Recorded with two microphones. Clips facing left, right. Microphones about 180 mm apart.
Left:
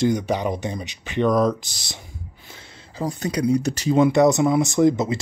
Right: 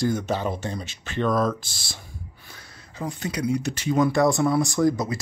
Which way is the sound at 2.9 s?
35° left (ahead or behind).